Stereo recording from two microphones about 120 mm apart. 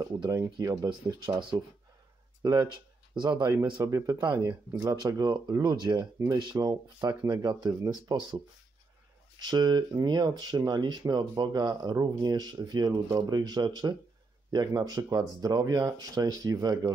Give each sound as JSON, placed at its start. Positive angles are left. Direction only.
{"t": 0.0, "sound": "speech", "side_deg": -35}
{"t": 0.4, "sound": "speech", "side_deg": -25}
{"t": 0.8, "sound": "speech", "side_deg": -40}
{"t": 3.8, "sound": "speech", "side_deg": -25}
{"t": 9.4, "sound": "speech", "side_deg": -35}